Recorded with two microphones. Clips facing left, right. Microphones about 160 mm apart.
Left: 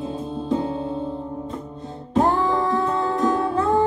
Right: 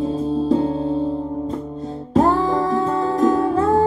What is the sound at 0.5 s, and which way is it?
Music, 35° right (ahead or behind).